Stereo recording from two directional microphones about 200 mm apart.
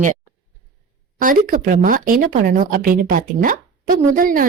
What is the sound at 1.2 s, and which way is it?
Speech, 45° right (ahead or behind).